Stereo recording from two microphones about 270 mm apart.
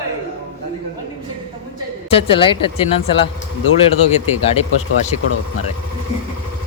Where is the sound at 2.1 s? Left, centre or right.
Centre.